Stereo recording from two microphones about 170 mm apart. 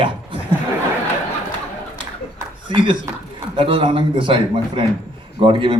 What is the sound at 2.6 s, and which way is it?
A man's voice, 30° right (ahead or behind).